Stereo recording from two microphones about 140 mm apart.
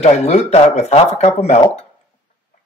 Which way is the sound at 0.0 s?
55° left (ahead or behind).